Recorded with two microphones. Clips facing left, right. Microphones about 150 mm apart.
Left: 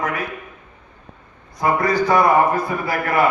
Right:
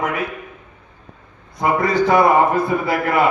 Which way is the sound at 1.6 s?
25° right (ahead or behind).